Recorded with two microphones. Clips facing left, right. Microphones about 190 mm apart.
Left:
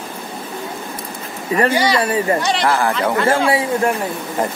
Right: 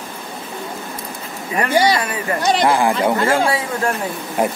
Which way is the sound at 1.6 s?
30° left (ahead or behind).